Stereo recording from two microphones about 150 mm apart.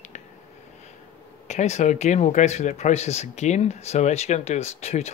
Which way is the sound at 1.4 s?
50° left (ahead or behind).